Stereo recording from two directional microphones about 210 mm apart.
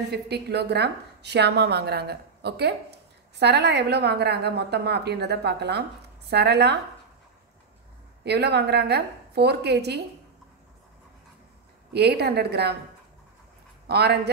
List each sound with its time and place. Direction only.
0.1 s a woman's voice: 50° right (ahead or behind)
8.2 s a woman's voice: 50° right (ahead or behind)
11.9 s a woman's voice: 50° right (ahead or behind)
13.8 s a woman's voice: 50° right (ahead or behind)